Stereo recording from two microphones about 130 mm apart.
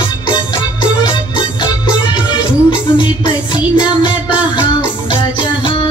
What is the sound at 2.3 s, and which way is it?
Music, 35° left (ahead or behind).